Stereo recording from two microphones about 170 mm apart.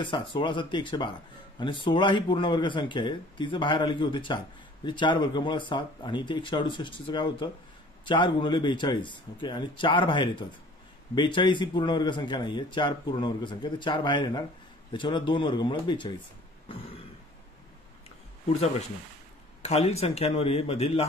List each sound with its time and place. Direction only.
0.0 s a man's voice: 30° left (ahead or behind)
16.6 s throat clearing: 35° left (ahead or behind)
19.6 s a man's voice: 40° left (ahead or behind)